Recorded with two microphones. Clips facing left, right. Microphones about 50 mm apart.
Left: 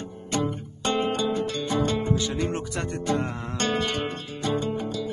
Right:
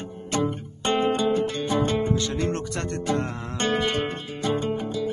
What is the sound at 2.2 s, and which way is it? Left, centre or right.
Music, centre.